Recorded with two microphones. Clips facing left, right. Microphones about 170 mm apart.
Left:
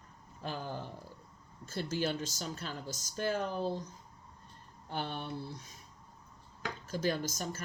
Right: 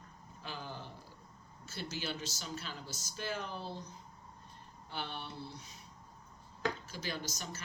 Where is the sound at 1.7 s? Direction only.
50° left (ahead or behind).